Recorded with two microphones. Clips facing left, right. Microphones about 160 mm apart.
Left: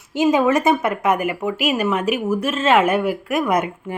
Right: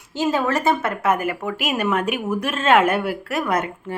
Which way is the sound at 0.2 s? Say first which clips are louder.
Left 5 dB; 15° left (ahead or behind).